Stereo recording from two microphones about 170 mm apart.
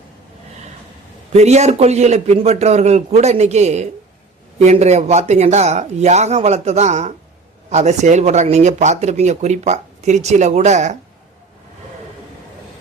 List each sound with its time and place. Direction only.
1.3 s a man's voice: 40° right (ahead or behind)